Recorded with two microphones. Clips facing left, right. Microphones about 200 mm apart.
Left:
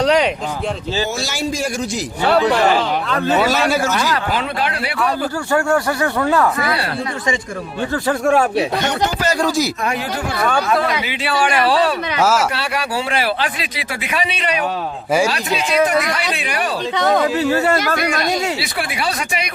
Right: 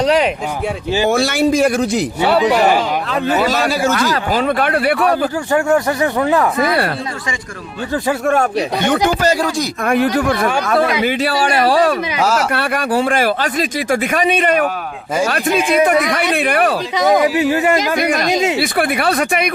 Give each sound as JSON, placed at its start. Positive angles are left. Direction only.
{"t": 0.0, "sound": "a sound", "side_deg": -5}
{"t": 1.0, "sound": "a man's voice", "side_deg": -55}
{"t": 2.4, "sound": "speech", "side_deg": -15}
{"t": 3.3, "sound": "a man's voice", "side_deg": 0}
{"t": 4.1, "sound": "a man's voice", "side_deg": -40}
{"t": 5.5, "sound": "speech", "side_deg": -20}
{"t": 8.2, "sound": "a man's voice", "side_deg": 0}
{"t": 8.8, "sound": "a man's voice", "side_deg": -50}
{"t": 12.2, "sound": "a man's voice", "side_deg": 5}
{"t": 12.5, "sound": "a man's voice", "side_deg": -50}
{"t": 17.0, "sound": "speech", "side_deg": -10}
{"t": 18.6, "sound": "a man's voice", "side_deg": -55}